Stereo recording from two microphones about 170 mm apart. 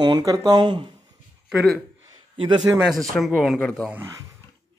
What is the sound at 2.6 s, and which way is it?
Speech, centre (ahead or behind).